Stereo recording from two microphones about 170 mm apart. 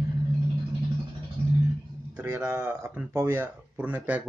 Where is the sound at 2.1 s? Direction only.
10° right (ahead or behind).